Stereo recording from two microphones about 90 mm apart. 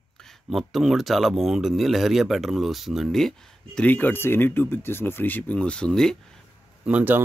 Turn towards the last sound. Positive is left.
turn(degrees=-15)  # may be behind; listen again after turning